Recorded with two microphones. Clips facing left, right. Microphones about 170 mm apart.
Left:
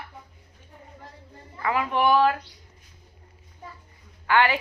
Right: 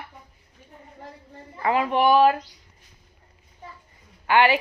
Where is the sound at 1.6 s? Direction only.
25° right (ahead or behind).